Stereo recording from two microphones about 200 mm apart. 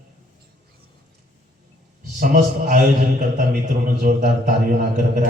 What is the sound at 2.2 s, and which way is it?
A man's voice, 40° right (ahead or behind).